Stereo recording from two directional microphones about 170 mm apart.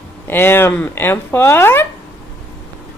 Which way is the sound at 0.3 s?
15° left (ahead or behind).